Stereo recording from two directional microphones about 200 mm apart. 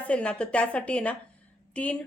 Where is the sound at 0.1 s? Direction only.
5° left (ahead or behind).